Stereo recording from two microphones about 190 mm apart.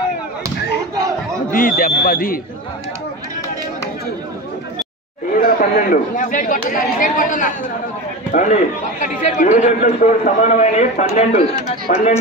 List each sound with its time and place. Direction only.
1.5 s speech: 50° left (ahead or behind)
5.4 s a man's voice: 50° left (ahead or behind)